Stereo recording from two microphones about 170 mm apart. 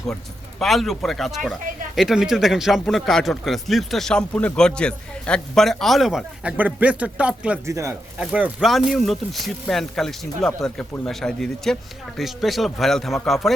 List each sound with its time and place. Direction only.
0.6 s speech: centre (ahead or behind)
7.7 s speech: 20° right (ahead or behind)
8.2 s speech: 10° right (ahead or behind)